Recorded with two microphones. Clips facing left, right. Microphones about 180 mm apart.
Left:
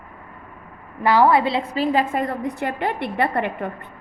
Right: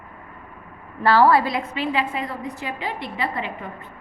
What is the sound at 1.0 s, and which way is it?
Speech, 15° left (ahead or behind).